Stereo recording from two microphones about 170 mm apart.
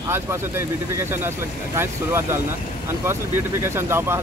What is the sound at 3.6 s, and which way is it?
Speech, 15° right (ahead or behind).